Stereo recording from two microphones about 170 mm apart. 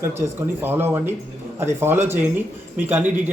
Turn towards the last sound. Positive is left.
turn(degrees=-10)  # may be behind; listen again after turning